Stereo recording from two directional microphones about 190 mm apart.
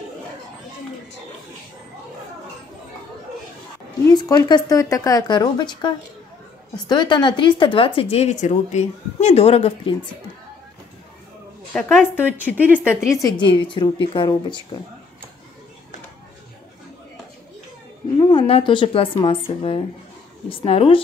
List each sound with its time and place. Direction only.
4.1 s speech: 20° left (ahead or behind)
12.0 s a woman's voice: 10° right (ahead or behind)
12.5 s speech: 10° left (ahead or behind)
13.5 s speech: 25° left (ahead or behind)
18.3 s speech: 25° left (ahead or behind)